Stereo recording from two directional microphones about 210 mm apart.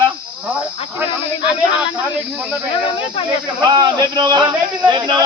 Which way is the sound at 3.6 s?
20° right (ahead or behind).